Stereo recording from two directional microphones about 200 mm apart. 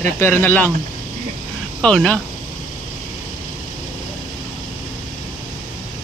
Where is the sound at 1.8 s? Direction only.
5° left (ahead or behind).